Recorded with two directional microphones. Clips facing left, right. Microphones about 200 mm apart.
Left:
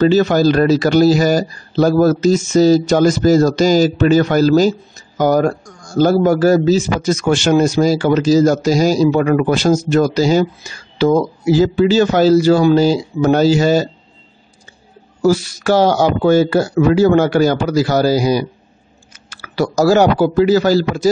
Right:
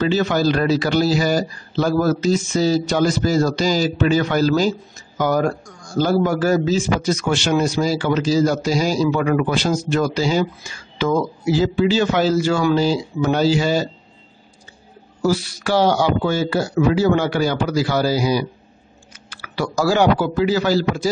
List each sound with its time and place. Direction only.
0.0 s speech: 40° left (ahead or behind)
15.2 s speech: 45° left (ahead or behind)